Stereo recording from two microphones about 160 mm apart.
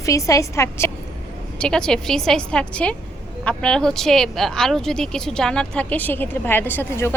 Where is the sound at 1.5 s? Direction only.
5° left (ahead or behind).